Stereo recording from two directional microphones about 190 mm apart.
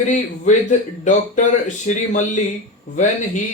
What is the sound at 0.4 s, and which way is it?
Speech, 40° left (ahead or behind).